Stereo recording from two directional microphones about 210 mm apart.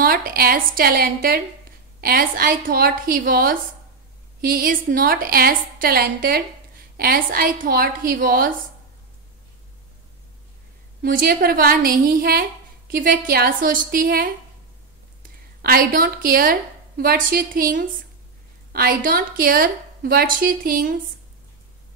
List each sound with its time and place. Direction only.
0.0 s a woman's voice: 40° right (ahead or behind)
11.0 s a woman's voice: 45° right (ahead or behind)
15.6 s a woman's voice: 45° right (ahead or behind)